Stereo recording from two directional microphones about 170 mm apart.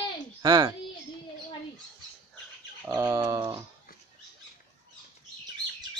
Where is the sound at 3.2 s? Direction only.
20° right (ahead or behind).